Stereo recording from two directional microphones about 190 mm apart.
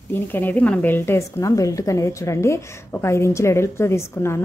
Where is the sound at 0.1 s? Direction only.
10° left (ahead or behind).